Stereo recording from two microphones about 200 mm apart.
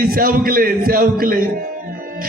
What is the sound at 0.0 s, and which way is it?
Speech, 45° right (ahead or behind).